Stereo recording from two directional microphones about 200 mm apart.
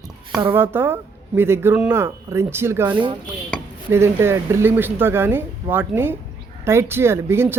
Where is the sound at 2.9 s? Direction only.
25° right (ahead or behind).